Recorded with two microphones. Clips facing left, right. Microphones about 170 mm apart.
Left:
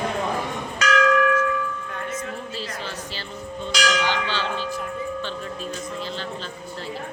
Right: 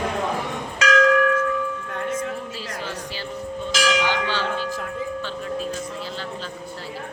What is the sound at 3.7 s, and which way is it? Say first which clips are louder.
Church bell: right 1 dB; 10° right (ahead or behind).